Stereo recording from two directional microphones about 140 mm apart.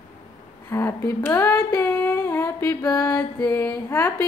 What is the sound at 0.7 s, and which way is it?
Speech, 20° left (ahead or behind).